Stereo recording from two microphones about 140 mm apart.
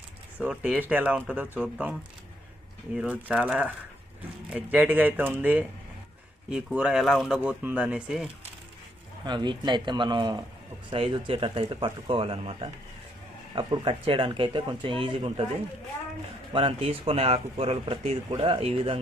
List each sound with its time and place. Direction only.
0.4 s speech: 10° right (ahead or behind)
9.2 s speech: 35° right (ahead or behind)
16.5 s speech: 40° right (ahead or behind)